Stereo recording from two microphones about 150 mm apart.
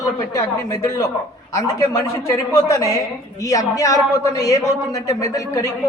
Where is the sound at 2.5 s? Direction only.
25° left (ahead or behind).